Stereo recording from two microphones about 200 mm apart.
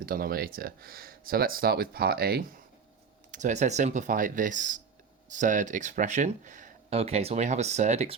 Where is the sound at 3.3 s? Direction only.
35° right (ahead or behind).